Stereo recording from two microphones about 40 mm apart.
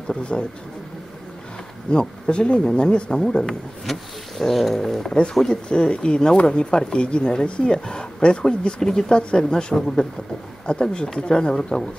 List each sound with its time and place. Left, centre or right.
0.1 s speech: left
1.9 s speech: left
5.5 s speech: left
11.5 s speech: centre